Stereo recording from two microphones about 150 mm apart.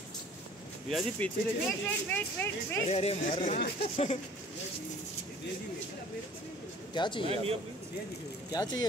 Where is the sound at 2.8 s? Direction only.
45° left (ahead or behind).